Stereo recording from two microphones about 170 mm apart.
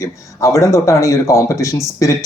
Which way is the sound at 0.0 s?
20° left (ahead or behind).